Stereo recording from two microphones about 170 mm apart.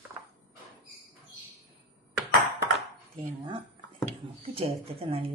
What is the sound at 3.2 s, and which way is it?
Speech, 30° right (ahead or behind).